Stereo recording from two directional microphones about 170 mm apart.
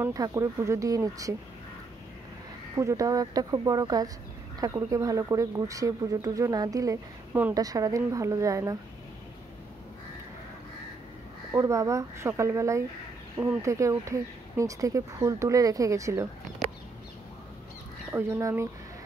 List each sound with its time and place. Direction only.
0.0 s speech: 20° right (ahead or behind)
2.8 s speech: 20° right (ahead or behind)
11.5 s speech: 20° right (ahead or behind)
18.1 s speech: 15° right (ahead or behind)